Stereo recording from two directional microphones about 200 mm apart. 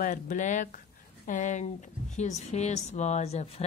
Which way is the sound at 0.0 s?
40° left (ahead or behind).